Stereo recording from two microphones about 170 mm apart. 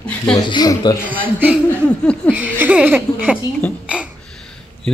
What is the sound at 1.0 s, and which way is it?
Speech, 10° right (ahead or behind).